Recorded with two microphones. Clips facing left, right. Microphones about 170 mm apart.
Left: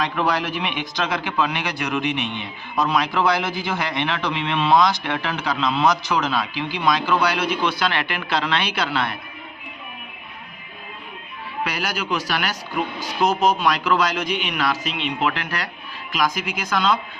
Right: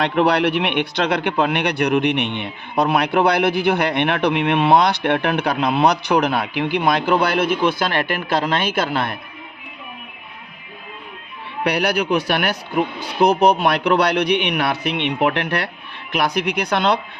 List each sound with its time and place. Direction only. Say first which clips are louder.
0.2 s a man's voice: right 9 dB; 65° right (ahead or behind); by 9.1 s 50° right (ahead or behind)
11.6 s a man's voice: right 8 dB; 65° right (ahead or behind)